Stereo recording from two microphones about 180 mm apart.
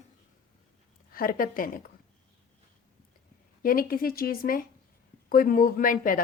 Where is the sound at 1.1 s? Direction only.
50° left (ahead or behind).